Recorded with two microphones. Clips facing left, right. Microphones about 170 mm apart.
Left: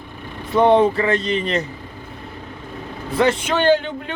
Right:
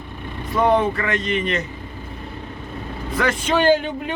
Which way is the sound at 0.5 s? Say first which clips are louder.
Left 4 dB; 30° left (ahead or behind).